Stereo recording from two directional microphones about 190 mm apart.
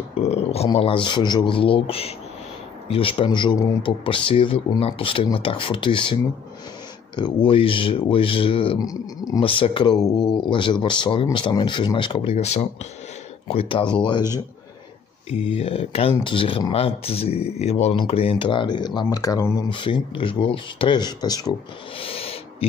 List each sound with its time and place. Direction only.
0.3 s speech: 30° left (ahead or behind)
7.2 s speech: 25° left (ahead or behind)
15.2 s speech: 30° left (ahead or behind)